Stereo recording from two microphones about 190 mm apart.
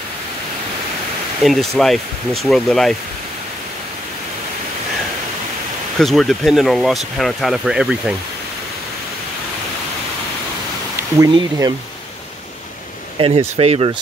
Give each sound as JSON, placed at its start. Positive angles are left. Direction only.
{"t": 1.4, "sound": "speech", "side_deg": 0}
{"t": 5.9, "sound": "speech", "side_deg": 0}
{"t": 11.1, "sound": "speech", "side_deg": -20}
{"t": 13.2, "sound": "speech", "side_deg": -30}